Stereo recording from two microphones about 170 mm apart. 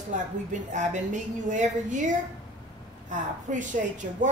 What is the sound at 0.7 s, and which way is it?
A woman's voice, 45° right (ahead or behind).